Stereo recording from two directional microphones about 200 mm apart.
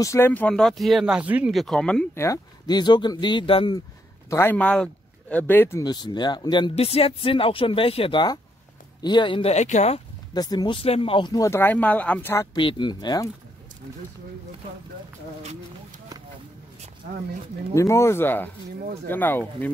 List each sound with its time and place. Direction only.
0.0 s speech: 15° left (ahead or behind)
4.3 s speech: 10° left (ahead or behind); by 10.0 s 35° left (ahead or behind)
10.3 s speech: 20° left (ahead or behind)
12.5 s speech: 25° left (ahead or behind)
17.7 s speech: 15° left (ahead or behind)